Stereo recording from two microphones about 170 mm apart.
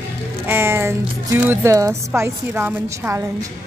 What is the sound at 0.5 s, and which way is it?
Speech, 15° right (ahead or behind).